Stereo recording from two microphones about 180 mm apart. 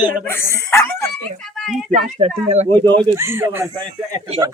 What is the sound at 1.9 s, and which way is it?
Speech, 45° right (ahead or behind).